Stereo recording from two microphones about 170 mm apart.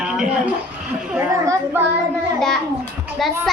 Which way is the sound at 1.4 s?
20° right (ahead or behind).